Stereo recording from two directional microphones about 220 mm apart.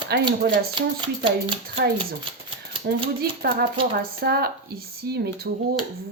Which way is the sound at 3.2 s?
45° right (ahead or behind).